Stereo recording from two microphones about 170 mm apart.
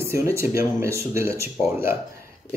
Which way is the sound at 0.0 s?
15° right (ahead or behind).